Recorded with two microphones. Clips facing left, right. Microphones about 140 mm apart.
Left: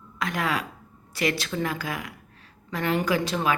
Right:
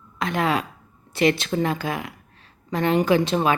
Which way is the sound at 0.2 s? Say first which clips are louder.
Right 5 dB; 25° right (ahead or behind).